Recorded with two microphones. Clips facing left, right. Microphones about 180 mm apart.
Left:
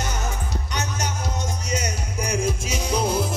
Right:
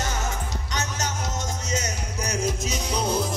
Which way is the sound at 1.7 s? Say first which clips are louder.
Left 2 dB; 10° left (ahead or behind).